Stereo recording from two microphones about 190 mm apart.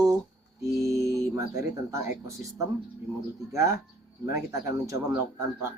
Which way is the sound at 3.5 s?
15° right (ahead or behind).